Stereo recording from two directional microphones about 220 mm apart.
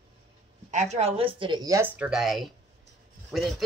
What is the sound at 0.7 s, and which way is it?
A woman's voice, 30° right (ahead or behind).